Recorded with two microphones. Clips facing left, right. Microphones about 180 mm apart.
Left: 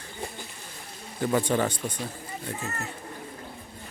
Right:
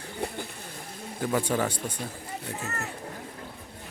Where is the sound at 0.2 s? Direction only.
65° right (ahead or behind).